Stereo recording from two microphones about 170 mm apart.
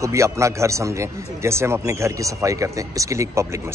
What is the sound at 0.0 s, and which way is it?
A man's voice, 15° right (ahead or behind).